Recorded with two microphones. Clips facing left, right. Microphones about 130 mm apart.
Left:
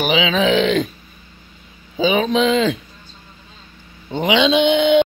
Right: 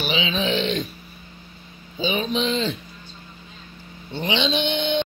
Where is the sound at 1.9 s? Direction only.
90° left.